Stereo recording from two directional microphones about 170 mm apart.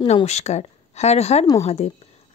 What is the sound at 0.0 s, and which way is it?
Speech, 40° left (ahead or behind).